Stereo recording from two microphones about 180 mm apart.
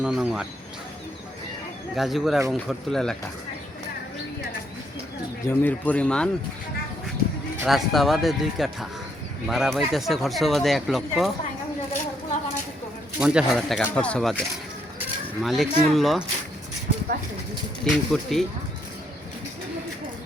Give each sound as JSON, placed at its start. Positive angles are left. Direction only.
{"t": 0.0, "sound": "speech", "side_deg": -5}
{"t": 2.0, "sound": "speech", "side_deg": 0}
{"t": 5.5, "sound": "speech", "side_deg": 10}
{"t": 7.6, "sound": "speech", "side_deg": 0}
{"t": 13.1, "sound": "speech", "side_deg": -5}
{"t": 17.8, "sound": "speech", "side_deg": 0}